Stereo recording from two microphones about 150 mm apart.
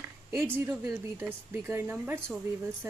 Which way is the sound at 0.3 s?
15° right (ahead or behind).